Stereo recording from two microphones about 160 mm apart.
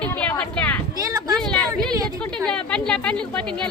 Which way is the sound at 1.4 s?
5° left (ahead or behind).